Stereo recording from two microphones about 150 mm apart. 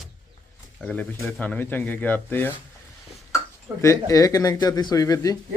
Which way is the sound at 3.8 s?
20° left (ahead or behind).